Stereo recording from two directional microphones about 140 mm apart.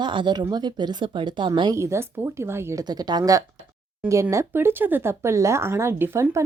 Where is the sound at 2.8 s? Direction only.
30° right (ahead or behind).